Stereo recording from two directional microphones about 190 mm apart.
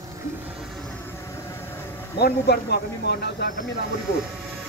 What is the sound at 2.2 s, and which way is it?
Speech, 60° left (ahead or behind).